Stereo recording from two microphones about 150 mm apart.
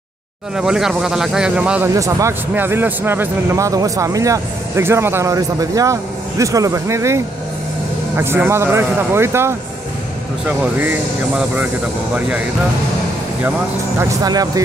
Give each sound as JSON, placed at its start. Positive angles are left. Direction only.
{"t": 0.6, "sound": "speech", "side_deg": -5}
{"t": 2.0, "sound": "speech", "side_deg": -20}
{"t": 8.2, "sound": "a man's voice", "side_deg": -15}
{"t": 13.9, "sound": "speech", "side_deg": -25}